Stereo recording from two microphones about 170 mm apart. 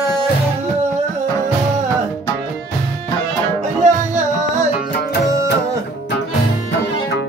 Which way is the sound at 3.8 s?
45° right (ahead or behind).